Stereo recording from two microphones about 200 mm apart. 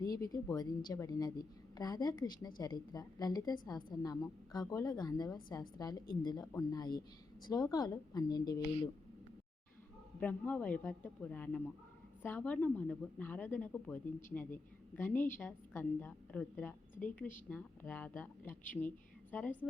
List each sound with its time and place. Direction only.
0.0 s a woman's voice: 20° left (ahead or behind)
10.2 s a woman's voice: 10° left (ahead or behind)